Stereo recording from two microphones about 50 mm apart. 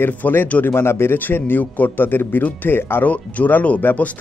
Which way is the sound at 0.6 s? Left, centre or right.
Left.